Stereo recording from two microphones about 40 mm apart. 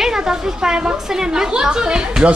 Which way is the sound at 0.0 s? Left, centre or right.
Centre.